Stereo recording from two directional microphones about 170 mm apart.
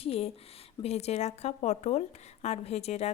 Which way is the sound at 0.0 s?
35° left (ahead or behind).